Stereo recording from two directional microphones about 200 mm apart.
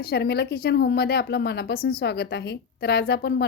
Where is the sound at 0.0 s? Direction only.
55° left (ahead or behind).